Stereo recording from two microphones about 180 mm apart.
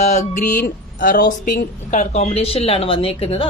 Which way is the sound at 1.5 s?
45° left (ahead or behind).